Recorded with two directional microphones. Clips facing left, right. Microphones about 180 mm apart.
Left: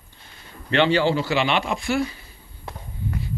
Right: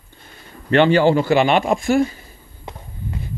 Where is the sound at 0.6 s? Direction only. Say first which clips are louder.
Right 5 dB; 50° right (ahead or behind).